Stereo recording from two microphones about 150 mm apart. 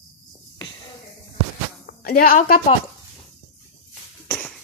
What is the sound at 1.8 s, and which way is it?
Speech, 80° left.